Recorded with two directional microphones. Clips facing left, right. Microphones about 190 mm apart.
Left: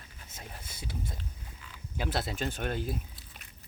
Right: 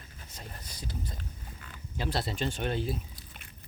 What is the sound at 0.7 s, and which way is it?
Speech, 25° left (ahead or behind).